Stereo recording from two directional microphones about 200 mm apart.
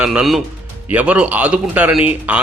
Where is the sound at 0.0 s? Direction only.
5° right (ahead or behind).